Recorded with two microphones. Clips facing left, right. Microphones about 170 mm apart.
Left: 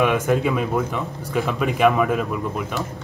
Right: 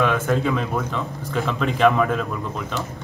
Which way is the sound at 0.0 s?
10° left (ahead or behind).